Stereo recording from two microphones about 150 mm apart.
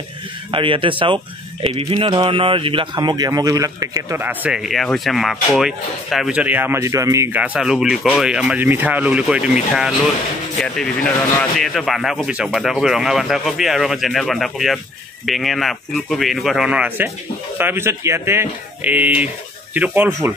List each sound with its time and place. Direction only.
0.5 s speech: 35° right (ahead or behind)
7.3 s speech: 5° right (ahead or behind)